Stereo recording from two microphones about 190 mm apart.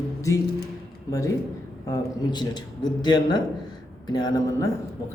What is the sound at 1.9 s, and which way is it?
Speech, 20° left (ahead or behind).